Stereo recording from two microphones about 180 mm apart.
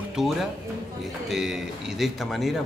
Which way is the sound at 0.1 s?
Centre (ahead or behind).